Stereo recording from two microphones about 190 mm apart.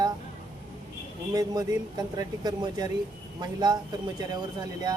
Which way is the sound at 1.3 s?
20° right (ahead or behind).